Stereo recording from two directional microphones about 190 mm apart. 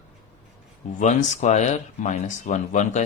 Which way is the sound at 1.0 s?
40° left (ahead or behind).